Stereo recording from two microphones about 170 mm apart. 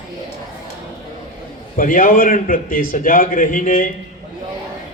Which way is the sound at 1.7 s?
55° left (ahead or behind).